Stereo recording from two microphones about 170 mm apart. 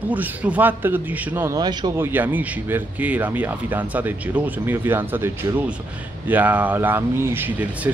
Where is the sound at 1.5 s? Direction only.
25° right (ahead or behind).